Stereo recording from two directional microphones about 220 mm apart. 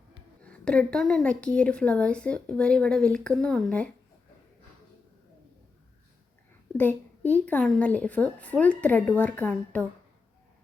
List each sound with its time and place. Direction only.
0.4 s a woman's voice: 5° left (ahead or behind)
6.7 s a woman's voice: 10° left (ahead or behind)